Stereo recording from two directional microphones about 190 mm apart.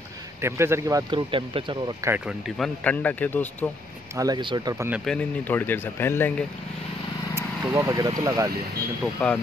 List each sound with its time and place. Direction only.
0.4 s speech: 15° right (ahead or behind)
2.0 s speech: 5° right (ahead or behind)
4.2 s speech: 25° right (ahead or behind)
5.0 s speech: 5° left (ahead or behind)
7.7 s speech: 15° right (ahead or behind)
9.0 s speech: 5° left (ahead or behind)